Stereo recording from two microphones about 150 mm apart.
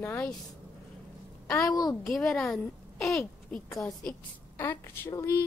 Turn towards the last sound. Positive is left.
turn(degrees=20)  # may be behind; listen again after turning